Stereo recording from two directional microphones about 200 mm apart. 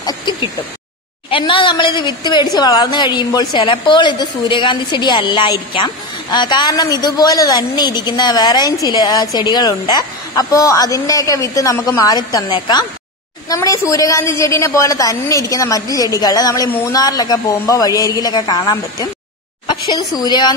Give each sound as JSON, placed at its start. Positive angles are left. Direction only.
{"t": 0.0, "sound": "a woman's voice", "side_deg": 25}